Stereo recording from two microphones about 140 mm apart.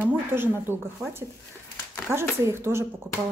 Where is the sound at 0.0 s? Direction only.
15° right (ahead or behind).